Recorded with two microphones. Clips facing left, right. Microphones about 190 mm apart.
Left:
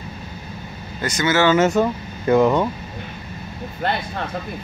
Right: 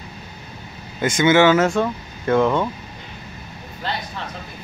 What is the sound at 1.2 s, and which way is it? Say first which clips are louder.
Speech: right 3 dB; 15° right (ahead or behind).